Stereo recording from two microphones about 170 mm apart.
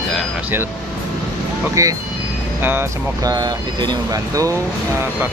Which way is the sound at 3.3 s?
25° right (ahead or behind).